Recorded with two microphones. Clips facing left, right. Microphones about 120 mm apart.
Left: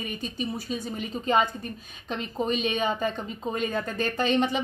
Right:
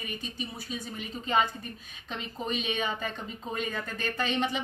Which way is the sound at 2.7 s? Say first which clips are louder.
Left 6 dB; 35° left (ahead or behind).